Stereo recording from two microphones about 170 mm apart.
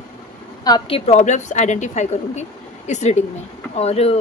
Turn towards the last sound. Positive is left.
turn(degrees=35)  # may be behind; listen again after turning